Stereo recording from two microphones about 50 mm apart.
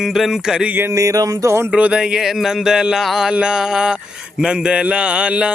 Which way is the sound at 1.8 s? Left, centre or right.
Right.